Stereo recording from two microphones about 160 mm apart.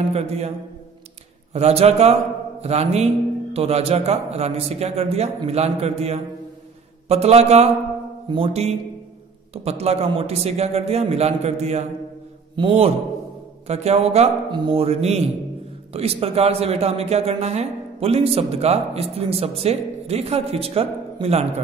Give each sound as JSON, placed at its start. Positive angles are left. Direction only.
{"t": 0.1, "sound": "a man's voice", "side_deg": -40}
{"t": 1.5, "sound": "a man's voice", "side_deg": -40}